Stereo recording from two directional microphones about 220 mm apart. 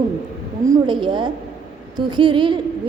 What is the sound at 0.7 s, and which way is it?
A woman's voice, 20° right (ahead or behind).